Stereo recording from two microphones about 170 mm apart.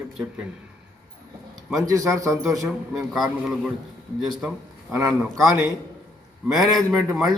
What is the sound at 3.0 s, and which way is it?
A man's voice, centre (ahead or behind).